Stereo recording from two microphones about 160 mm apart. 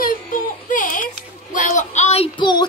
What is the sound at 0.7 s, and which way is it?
Music, 55° left (ahead or behind).